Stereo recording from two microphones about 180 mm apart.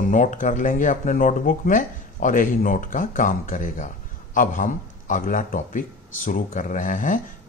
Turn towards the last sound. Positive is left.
turn(degrees=50)  # may be behind; listen again after turning